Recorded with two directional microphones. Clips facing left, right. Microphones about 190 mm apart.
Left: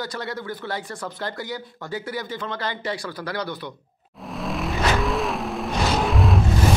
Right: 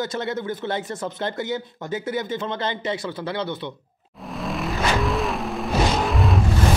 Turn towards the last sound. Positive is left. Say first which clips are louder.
# even
turn(degrees=0)  # may be behind; listen again after turning